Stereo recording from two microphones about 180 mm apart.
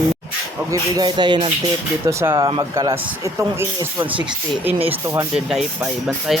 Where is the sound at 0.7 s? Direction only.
25° right (ahead or behind).